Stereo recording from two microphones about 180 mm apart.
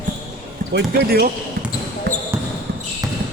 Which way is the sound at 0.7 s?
65° right (ahead or behind).